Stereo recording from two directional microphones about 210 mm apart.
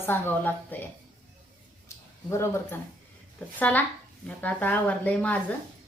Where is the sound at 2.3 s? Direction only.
15° left (ahead or behind).